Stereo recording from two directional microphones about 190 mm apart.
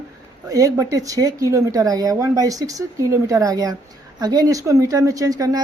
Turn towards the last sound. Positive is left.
turn(degrees=-20)  # may be behind; listen again after turning